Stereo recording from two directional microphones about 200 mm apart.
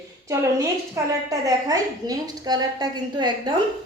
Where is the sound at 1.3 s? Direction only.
20° right (ahead or behind).